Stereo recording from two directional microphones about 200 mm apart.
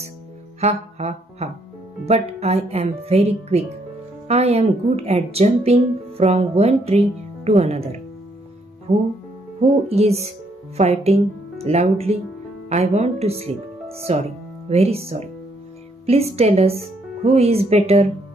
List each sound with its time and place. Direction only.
0.6 s speech: 35° right (ahead or behind)